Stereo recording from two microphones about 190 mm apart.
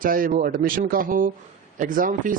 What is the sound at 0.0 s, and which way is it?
Speech, 45° right (ahead or behind).